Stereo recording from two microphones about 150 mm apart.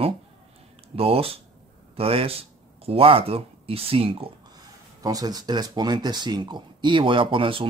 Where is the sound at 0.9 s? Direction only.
40° right (ahead or behind).